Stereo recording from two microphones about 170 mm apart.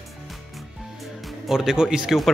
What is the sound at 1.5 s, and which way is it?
Speech, 5° right (ahead or behind).